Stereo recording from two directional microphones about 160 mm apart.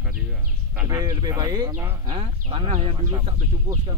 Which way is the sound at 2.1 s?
30° right (ahead or behind).